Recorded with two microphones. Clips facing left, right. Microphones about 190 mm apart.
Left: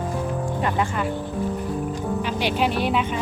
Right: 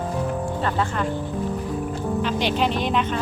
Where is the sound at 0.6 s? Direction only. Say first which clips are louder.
Left 1 dB; 15° left (ahead or behind).